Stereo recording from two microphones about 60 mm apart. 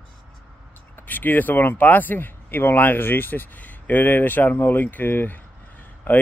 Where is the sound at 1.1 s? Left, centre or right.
Left.